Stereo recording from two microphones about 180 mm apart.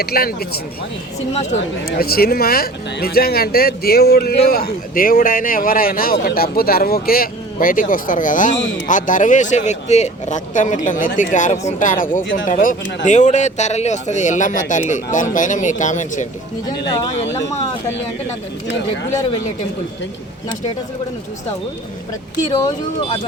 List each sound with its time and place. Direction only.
0.0 s speech: 55° left (ahead or behind)
2.0 s speech: 55° left (ahead or behind)
22.5 s speech: 25° left (ahead or behind)